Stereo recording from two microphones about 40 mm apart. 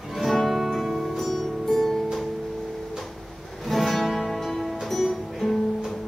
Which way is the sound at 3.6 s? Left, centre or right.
Centre.